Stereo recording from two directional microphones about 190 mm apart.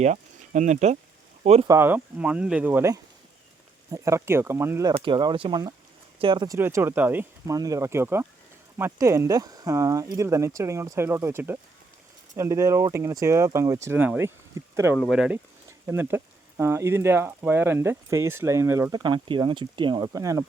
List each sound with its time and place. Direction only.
0.0 s speech: 40° right (ahead or behind)
1.6 s speech: 15° right (ahead or behind)
14.9 s speech: centre (ahead or behind); by 20.4 s 15° right (ahead or behind)